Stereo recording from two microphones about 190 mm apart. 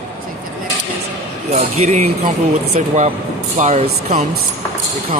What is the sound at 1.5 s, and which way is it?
Speech, 35° right (ahead or behind).